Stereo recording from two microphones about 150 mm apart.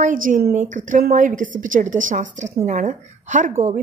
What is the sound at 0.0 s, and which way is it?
A woman's voice, 60° right (ahead or behind).